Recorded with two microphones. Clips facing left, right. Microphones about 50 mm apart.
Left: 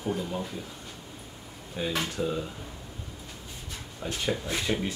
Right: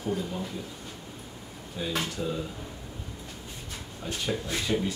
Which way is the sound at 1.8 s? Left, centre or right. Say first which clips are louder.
Left 2 dB; left.